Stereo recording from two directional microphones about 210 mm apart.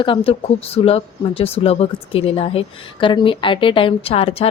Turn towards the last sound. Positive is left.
turn(degrees=30)  # may be behind; listen again after turning